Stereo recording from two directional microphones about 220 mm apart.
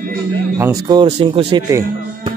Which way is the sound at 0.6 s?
20° right (ahead or behind).